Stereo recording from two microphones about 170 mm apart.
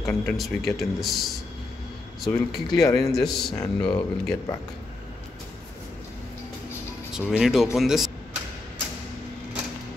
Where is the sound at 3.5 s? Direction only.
30° left (ahead or behind).